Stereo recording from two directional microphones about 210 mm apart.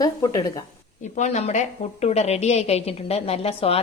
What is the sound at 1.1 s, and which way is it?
A woman's voice, 35° left (ahead or behind).